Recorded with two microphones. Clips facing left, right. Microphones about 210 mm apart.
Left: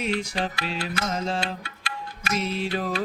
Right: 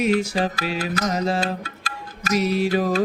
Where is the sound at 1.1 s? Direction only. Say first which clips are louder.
Right 5 dB; 15° right (ahead or behind).